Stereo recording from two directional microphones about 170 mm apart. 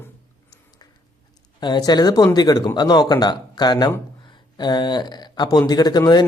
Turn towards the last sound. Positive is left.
turn(degrees=25)  # may be behind; listen again after turning